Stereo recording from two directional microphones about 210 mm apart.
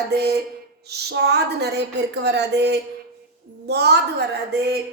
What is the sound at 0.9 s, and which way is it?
A woman's voice, 50° right (ahead or behind).